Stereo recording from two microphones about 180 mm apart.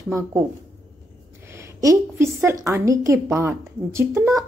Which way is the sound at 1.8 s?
15° right (ahead or behind).